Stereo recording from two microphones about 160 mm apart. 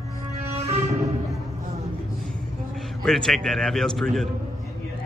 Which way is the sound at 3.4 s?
5° left (ahead or behind).